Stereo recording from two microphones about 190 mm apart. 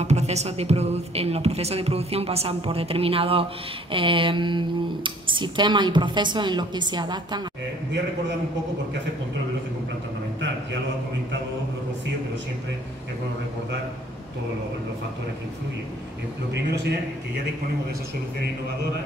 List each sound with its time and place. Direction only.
0.0 s speech: 35° right (ahead or behind)
16.5 s a man's voice: 60° right (ahead or behind)